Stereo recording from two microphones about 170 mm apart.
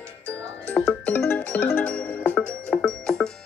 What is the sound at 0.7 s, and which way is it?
Music, 10° left (ahead or behind).